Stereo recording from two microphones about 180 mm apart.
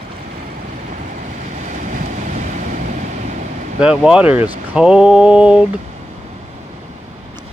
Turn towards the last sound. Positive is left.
turn(degrees=-5)  # may be behind; listen again after turning